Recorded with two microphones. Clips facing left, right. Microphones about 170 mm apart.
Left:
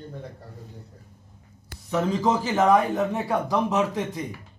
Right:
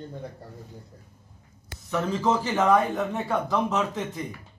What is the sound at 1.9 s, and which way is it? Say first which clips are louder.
A man's voice: left 2 dB; 15° left (ahead or behind).